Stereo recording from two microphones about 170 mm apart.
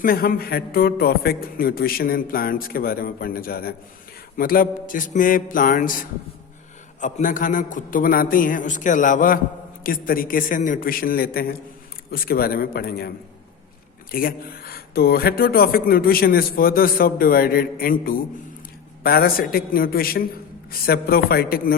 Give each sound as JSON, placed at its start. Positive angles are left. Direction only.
{"t": 0.0, "sound": "a man's voice", "side_deg": 60}
{"t": 14.1, "sound": "speech", "side_deg": 60}